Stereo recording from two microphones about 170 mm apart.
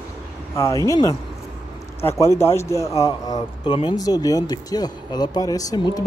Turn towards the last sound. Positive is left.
turn(degrees=25)  # may be behind; listen again after turning